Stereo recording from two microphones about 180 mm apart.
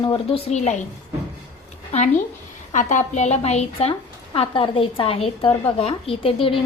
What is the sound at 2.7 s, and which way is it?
A woman's voice, 40° left (ahead or behind).